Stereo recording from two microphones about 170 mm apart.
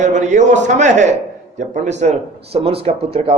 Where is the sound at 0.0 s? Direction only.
45° right (ahead or behind).